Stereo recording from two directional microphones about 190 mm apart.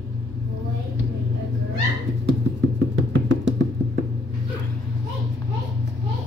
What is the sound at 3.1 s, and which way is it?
Music, 75° right (ahead or behind).